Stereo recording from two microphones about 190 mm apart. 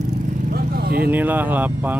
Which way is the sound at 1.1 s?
10° right (ahead or behind).